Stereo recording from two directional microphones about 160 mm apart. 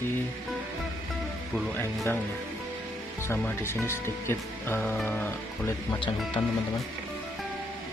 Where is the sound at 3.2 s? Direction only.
15° left (ahead or behind).